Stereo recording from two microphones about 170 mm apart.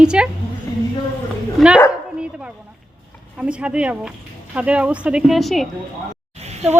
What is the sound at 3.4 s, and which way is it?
Speech, 5° right (ahead or behind).